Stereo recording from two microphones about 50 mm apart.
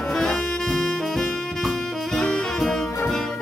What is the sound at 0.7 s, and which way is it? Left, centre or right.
Saxophone, centre.